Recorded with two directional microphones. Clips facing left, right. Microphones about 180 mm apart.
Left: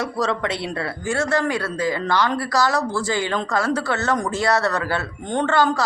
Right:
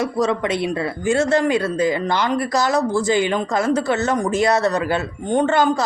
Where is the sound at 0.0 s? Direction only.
20° right (ahead or behind).